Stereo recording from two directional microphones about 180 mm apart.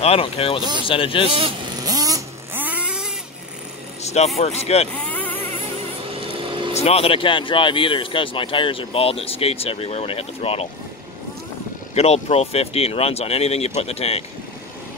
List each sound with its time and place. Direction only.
0.0 s speech: 30° left (ahead or behind)
1.2 s vehicle: 30° right (ahead or behind); by 3.1 s 5° right (ahead or behind)
4.0 s vehicle: 40° left (ahead or behind)
4.4 s speech: 35° left (ahead or behind)
4.9 s speech: 10° left (ahead or behind)
6.7 s speech: 35° left (ahead or behind)
11.9 s speech: 35° left (ahead or behind)